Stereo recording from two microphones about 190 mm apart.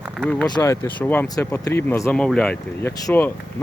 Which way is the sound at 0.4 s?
20° left (ahead or behind).